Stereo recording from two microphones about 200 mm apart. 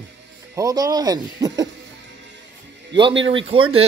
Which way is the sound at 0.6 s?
15° right (ahead or behind).